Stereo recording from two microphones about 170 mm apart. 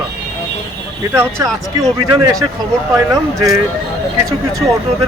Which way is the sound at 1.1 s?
15° right (ahead or behind).